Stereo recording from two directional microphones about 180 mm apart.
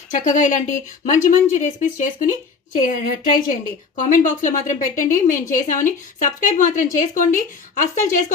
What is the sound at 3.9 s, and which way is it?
Speech, 45° left (ahead or behind).